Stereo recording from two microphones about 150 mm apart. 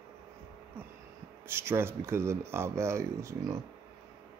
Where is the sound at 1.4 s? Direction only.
15° right (ahead or behind).